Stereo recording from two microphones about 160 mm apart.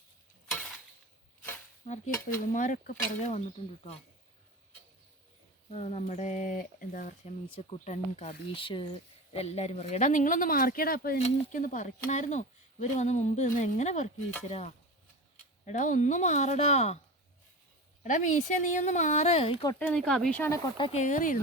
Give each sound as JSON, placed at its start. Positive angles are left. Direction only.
{"t": 1.9, "sound": "speech", "side_deg": 55}
{"t": 5.7, "sound": "speech", "side_deg": 45}
{"t": 7.7, "sound": "speech", "side_deg": 45}
{"t": 11.2, "sound": "speech", "side_deg": 55}
{"t": 18.0, "sound": "speech", "side_deg": 50}
{"t": 19.8, "sound": "speech", "side_deg": 5}
{"t": 20.9, "sound": "speech", "side_deg": 50}